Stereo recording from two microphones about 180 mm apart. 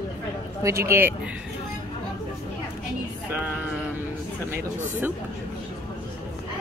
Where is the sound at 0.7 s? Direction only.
15° right (ahead or behind).